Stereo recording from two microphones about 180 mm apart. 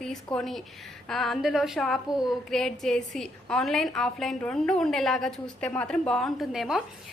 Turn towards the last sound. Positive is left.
turn(degrees=0)  # may be behind; listen again after turning